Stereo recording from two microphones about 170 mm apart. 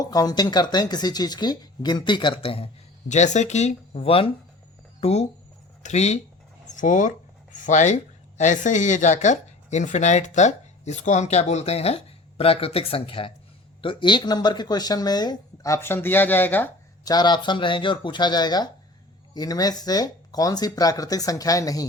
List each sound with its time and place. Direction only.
0.0 s speech: 20° left (ahead or behind)
3.1 s a woman's voice: 45° left (ahead or behind); by 16.6 s 10° left (ahead or behind)
17.0 s speech: 25° left (ahead or behind)